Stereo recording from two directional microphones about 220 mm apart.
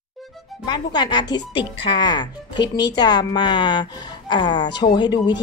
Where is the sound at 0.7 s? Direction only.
20° left (ahead or behind).